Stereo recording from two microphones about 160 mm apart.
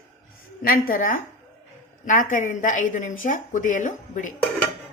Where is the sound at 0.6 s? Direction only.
65° left (ahead or behind).